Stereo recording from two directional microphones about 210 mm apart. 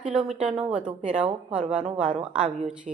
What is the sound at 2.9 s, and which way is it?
Speech, 35° right (ahead or behind).